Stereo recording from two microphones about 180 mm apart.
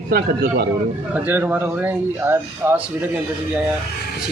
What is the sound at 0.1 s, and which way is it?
Speech, 55° right (ahead or behind).